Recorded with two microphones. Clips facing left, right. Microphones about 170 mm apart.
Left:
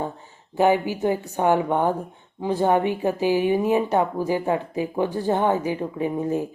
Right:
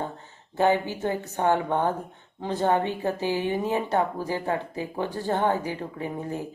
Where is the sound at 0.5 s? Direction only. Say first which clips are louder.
Left 3 dB; 15° left (ahead or behind).